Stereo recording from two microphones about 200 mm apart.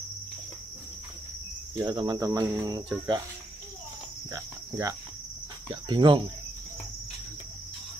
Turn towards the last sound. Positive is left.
turn(degrees=-25)  # may be behind; listen again after turning